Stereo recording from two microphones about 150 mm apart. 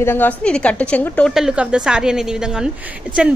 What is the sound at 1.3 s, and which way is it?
A woman's voice, 5° right (ahead or behind).